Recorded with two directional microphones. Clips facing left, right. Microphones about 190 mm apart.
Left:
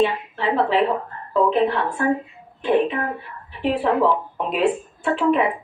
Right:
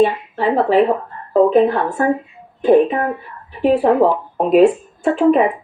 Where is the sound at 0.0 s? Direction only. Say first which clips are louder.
Right 5 dB; 45° right (ahead or behind).